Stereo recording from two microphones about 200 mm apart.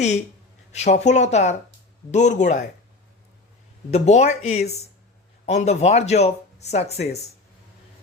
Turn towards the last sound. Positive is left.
turn(degrees=30)  # may be behind; listen again after turning